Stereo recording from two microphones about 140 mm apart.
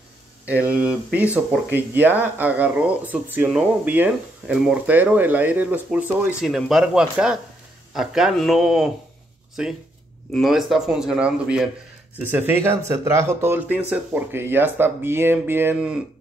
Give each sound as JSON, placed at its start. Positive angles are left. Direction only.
{"t": 0.5, "sound": "speech", "side_deg": -10}